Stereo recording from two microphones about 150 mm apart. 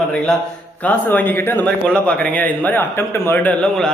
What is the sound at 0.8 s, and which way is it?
A man's voice, 10° left (ahead or behind).